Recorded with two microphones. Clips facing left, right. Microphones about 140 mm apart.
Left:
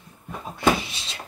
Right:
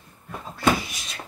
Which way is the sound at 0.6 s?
25° left (ahead or behind).